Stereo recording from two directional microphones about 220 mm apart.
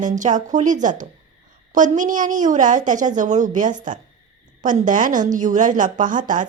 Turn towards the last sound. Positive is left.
turn(degrees=-35)  # may be behind; listen again after turning